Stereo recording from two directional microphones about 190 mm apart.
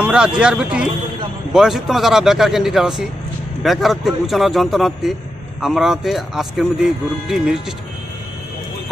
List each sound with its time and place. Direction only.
0.0 s speech: 5° right (ahead or behind)